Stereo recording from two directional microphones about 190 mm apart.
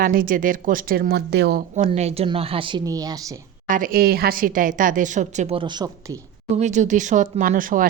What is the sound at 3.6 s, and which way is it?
Speech, 45° right (ahead or behind).